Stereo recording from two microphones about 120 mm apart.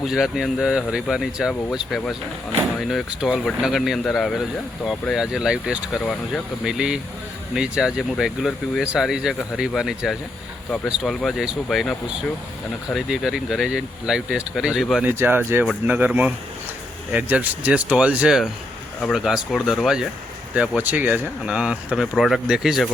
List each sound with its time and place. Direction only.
0.0 s speech: centre (ahead or behind)
15.0 s speech: 20° right (ahead or behind); by 20.1 s centre (ahead or behind)
20.6 s speech: 10° right (ahead or behind)